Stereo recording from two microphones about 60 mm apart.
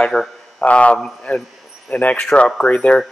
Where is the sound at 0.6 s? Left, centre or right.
Left.